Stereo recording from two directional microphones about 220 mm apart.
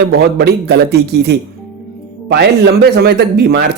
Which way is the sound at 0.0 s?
45° right (ahead or behind).